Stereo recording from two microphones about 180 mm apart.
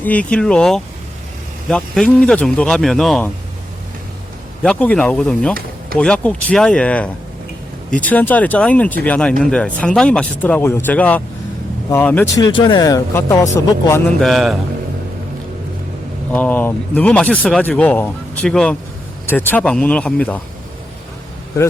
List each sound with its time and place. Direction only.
0.0 s speech: 10° left (ahead or behind)
4.6 s speech: 5° left (ahead or behind)
12.4 s speech: 25° left (ahead or behind)
14.2 s speech: centre (ahead or behind)
16.3 s speech: 10° left (ahead or behind)